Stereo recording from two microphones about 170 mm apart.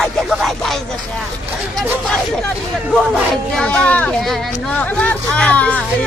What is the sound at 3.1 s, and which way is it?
Speech, 5° left (ahead or behind).